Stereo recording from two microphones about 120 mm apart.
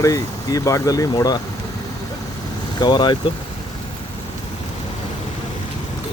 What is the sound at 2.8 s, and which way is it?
Speech, 40° left (ahead or behind).